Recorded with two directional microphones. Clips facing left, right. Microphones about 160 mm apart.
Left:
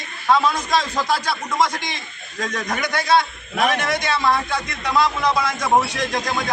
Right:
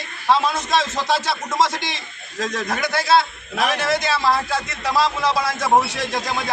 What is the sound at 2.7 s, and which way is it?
Speech, 5° right (ahead or behind).